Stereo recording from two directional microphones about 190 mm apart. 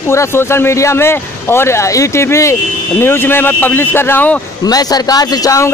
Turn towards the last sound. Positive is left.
turn(degrees=15)  # may be behind; listen again after turning